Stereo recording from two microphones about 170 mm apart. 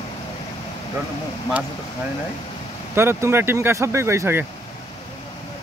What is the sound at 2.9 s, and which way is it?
Speech, 15° right (ahead or behind).